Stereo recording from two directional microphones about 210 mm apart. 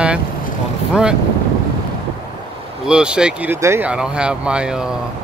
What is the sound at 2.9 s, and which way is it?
Speech, 5° right (ahead or behind).